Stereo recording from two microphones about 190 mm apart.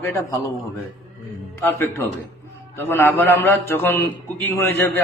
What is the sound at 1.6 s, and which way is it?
A man's voice, 10° left (ahead or behind).